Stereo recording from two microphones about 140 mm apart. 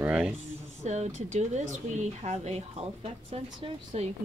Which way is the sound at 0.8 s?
55° right (ahead or behind).